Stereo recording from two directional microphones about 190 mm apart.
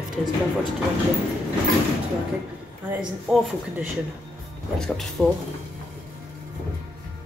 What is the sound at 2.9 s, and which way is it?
Speech, 5° right (ahead or behind).